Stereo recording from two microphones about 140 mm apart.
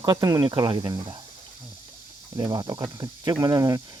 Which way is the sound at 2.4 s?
25° right (ahead or behind).